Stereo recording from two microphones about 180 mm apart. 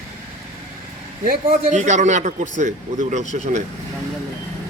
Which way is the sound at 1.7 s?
40° right (ahead or behind).